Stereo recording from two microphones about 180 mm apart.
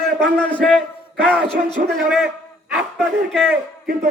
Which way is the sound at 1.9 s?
Centre (ahead or behind).